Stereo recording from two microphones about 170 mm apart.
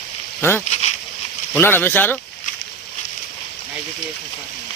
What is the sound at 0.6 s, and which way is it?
Speech, 40° left (ahead or behind).